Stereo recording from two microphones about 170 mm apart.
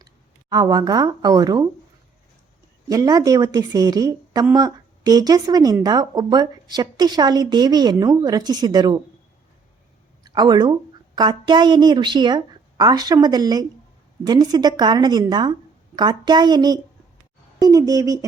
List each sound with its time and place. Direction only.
0.5 s a woman's voice: 25° right (ahead or behind)
2.9 s a woman's voice: 20° right (ahead or behind)
10.2 s a woman's voice: 25° right (ahead or behind)